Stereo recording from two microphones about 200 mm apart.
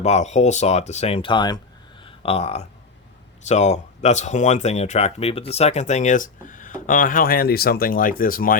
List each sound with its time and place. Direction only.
0.0 s speech: 35° left (ahead or behind)